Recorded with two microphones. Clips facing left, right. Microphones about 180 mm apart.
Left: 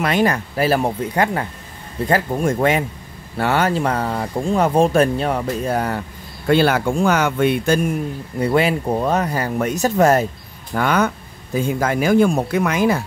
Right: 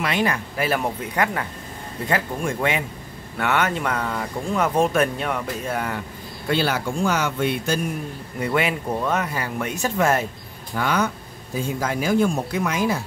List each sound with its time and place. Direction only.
0.0 s speech: 40° left (ahead or behind)
6.5 s speech: 55° left (ahead or behind)
8.4 s speech: 35° left (ahead or behind)
10.7 s speech: 55° left (ahead or behind)